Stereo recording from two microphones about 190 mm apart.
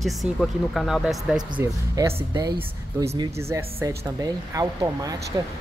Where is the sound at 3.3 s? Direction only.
15° right (ahead or behind).